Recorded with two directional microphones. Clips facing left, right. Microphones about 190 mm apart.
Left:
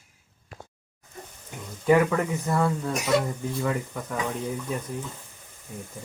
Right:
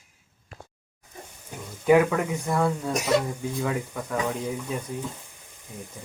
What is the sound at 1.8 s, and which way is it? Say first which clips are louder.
Speech: right 1 dB; 10° right (ahead or behind).